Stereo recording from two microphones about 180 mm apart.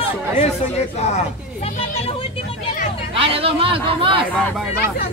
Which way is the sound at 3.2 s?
30° right (ahead or behind).